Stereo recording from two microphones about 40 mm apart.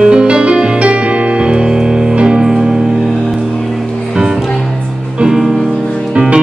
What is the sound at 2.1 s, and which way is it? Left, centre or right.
Music, right.